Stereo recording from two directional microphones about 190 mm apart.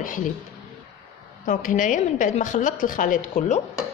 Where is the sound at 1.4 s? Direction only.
45° left (ahead or behind).